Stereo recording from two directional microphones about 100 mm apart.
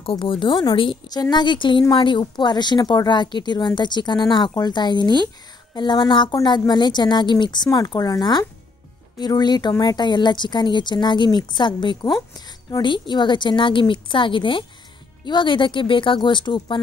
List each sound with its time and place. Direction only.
0.0 s speech: 60° left (ahead or behind)
1.0 s speech: 40° left (ahead or behind)